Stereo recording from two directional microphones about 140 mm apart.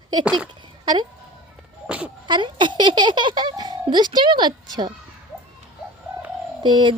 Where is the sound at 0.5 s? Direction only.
30° right (ahead or behind).